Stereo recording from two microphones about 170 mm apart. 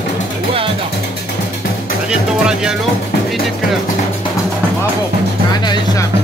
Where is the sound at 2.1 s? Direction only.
5° right (ahead or behind).